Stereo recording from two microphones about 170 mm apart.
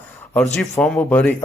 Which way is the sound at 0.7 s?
10° left (ahead or behind).